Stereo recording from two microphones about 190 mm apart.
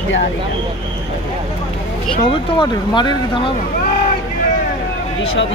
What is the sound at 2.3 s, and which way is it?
Speech, 25° left (ahead or behind).